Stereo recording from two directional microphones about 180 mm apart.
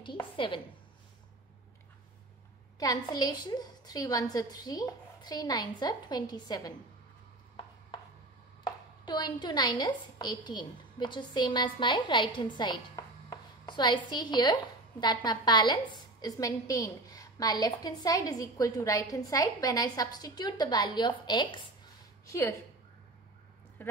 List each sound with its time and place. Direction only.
2.8 s a woman's voice: 20° left (ahead or behind)
8.6 s a woman's voice: 20° left (ahead or behind)
23.8 s speech: 10° left (ahead or behind)